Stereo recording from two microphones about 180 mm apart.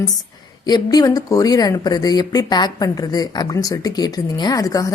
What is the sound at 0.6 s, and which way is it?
Speech, 20° left (ahead or behind).